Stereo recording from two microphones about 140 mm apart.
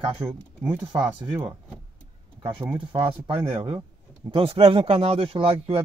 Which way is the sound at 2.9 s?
40° right (ahead or behind).